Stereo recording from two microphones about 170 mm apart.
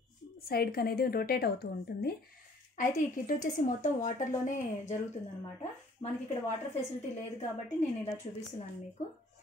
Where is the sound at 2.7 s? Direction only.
50° left (ahead or behind).